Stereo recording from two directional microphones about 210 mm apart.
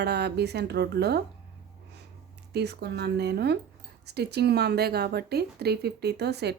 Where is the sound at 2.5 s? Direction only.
50° right (ahead or behind).